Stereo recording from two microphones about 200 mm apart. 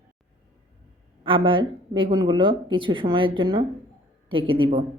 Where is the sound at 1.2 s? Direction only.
25° right (ahead or behind).